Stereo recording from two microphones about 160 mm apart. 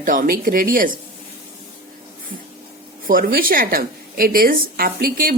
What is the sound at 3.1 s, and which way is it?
A woman's voice, 65° right (ahead or behind).